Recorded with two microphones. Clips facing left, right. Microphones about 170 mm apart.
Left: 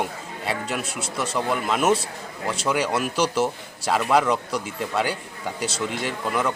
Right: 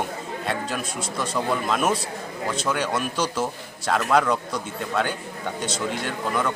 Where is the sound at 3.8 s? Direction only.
5° left (ahead or behind).